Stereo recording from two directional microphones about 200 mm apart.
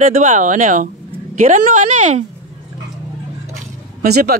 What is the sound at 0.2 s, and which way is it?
A woman's voice, 40° right (ahead or behind).